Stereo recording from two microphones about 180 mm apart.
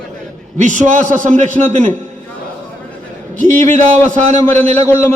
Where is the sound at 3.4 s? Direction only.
45° right (ahead or behind).